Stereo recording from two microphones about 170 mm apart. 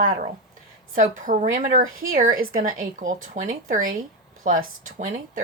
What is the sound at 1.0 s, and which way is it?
Speech, 50° right (ahead or behind).